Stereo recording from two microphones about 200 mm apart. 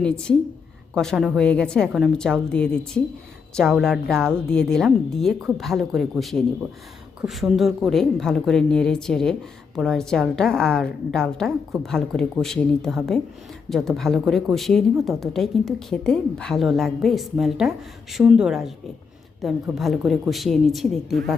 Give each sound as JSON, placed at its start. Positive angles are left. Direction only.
{"t": 0.0, "sound": "speech", "side_deg": 5}